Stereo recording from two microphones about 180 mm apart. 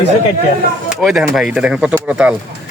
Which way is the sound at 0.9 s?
Centre (ahead or behind).